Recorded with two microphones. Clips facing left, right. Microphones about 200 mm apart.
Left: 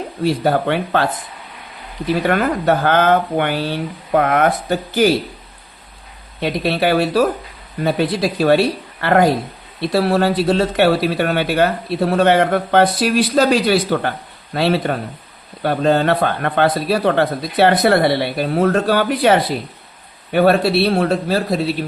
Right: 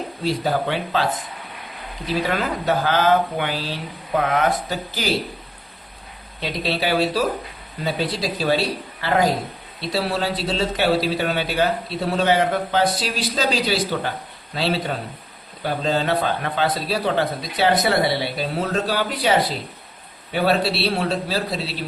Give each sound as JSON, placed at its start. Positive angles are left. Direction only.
{"t": 0.3, "sound": "speech", "side_deg": 60}
{"t": 2.2, "sound": "speech", "side_deg": 55}
{"t": 6.4, "sound": "speech", "side_deg": 55}